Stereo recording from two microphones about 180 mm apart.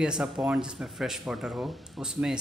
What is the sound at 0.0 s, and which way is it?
Speech, 5° right (ahead or behind).